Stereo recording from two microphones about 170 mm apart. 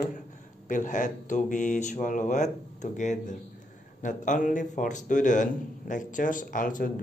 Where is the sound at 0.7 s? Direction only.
50° left (ahead or behind).